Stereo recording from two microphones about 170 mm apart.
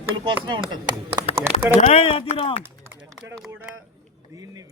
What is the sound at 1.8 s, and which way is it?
Speech, 40° left (ahead or behind).